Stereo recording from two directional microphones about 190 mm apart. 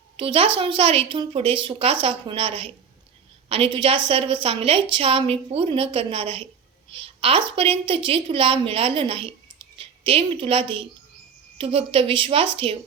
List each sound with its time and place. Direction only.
0.2 s a woman's voice: 25° right (ahead or behind)